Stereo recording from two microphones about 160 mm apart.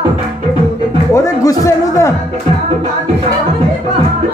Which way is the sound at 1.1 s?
20° left (ahead or behind).